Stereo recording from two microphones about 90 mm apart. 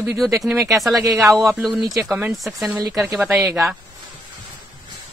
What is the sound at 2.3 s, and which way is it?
Speech, centre (ahead or behind).